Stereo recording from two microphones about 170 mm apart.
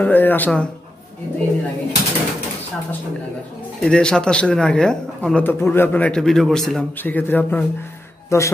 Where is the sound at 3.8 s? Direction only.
5° left (ahead or behind).